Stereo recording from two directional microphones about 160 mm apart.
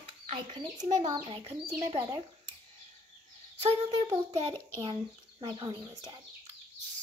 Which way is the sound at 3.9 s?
25° right (ahead or behind).